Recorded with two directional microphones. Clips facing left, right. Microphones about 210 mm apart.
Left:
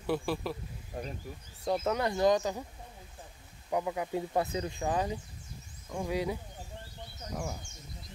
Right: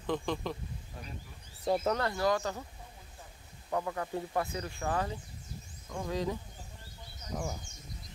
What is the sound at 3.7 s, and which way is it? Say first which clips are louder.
Speech: left 2 dB; 15° left (ahead or behind).